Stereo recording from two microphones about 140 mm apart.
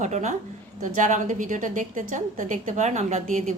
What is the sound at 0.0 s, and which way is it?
A woman's voice, 55° right (ahead or behind).